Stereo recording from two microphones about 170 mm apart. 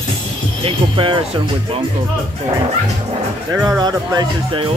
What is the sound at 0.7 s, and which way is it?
Speech, 30° right (ahead or behind).